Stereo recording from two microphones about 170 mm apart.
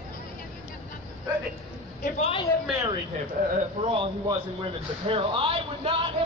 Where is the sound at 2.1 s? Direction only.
35° left (ahead or behind).